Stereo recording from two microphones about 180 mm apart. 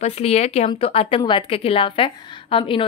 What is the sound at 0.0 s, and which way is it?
Speech, 35° left (ahead or behind).